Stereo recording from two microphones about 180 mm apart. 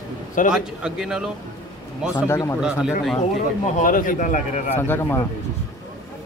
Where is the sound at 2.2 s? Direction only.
15° left (ahead or behind).